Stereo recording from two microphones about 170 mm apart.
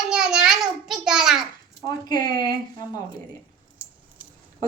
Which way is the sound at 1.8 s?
25° left (ahead or behind).